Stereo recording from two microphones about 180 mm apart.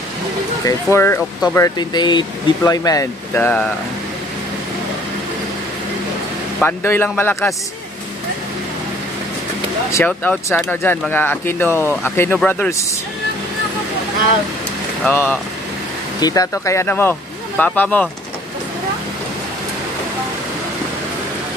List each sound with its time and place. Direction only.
0.9 s speech: 15° left (ahead or behind)
6.6 s speech: 10° left (ahead or behind)
9.8 s speech: 10° left (ahead or behind)
15.0 s speech: 10° left (ahead or behind)
16.2 s speech: 20° left (ahead or behind)